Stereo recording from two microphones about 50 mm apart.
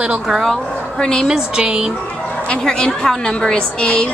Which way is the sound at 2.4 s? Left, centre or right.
Centre.